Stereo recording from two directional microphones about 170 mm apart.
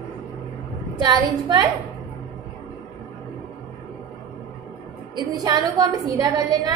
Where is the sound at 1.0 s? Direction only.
25° right (ahead or behind).